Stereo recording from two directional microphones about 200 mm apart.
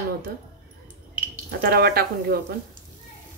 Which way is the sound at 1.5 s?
50° right (ahead or behind).